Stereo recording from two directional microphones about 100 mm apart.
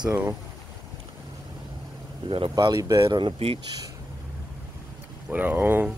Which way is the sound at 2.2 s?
60° right (ahead or behind).